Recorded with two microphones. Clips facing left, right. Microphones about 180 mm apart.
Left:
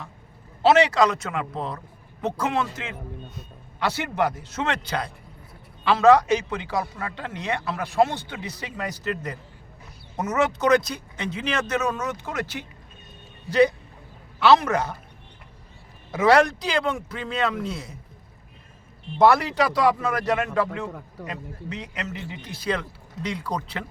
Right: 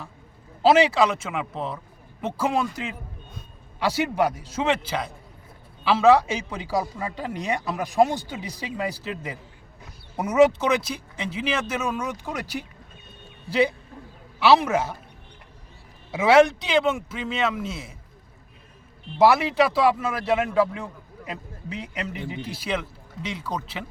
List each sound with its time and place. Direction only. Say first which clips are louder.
0.7 s speech: even; 5° right (ahead or behind)
3.8 s speech: right 2 dB; 10° right (ahead or behind)
14.3 s speech: even; 10° right (ahead or behind)
16.1 s speech: right 2 dB; 5° right (ahead or behind)
19.2 s speech: even; 5° right (ahead or behind)
22.4 s speech: right 6 dB; 30° right (ahead or behind)
22.6 s speech: left 3 dB; 5° right (ahead or behind)